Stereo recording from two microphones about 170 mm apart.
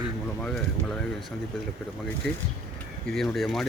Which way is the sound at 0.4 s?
5° left (ahead or behind).